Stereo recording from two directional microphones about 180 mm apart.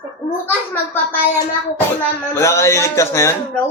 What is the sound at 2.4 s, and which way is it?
Speech, 15° left (ahead or behind).